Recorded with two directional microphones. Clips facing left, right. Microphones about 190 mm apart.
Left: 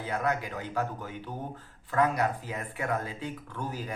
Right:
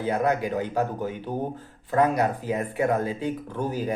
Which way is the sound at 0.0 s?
25° right (ahead or behind).